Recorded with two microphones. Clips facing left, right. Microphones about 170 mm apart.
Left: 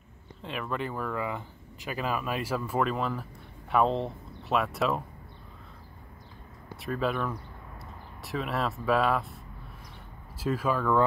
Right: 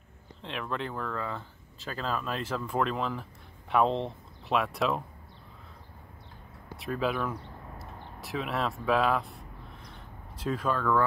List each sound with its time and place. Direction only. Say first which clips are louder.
0.4 s speech: left 1 dB; 5° left (ahead or behind)
6.8 s speech: even; centre (ahead or behind)